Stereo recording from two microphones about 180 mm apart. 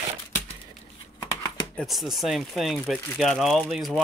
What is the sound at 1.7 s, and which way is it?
Speech, centre (ahead or behind).